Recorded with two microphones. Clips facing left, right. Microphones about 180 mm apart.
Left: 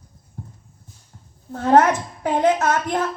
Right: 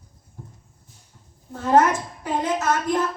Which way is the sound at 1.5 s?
65° left (ahead or behind).